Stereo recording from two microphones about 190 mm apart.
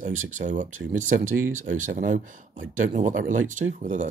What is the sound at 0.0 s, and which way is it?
Speech, 40° right (ahead or behind).